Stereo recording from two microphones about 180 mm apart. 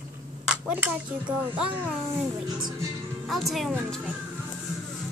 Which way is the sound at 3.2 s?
Centre (ahead or behind).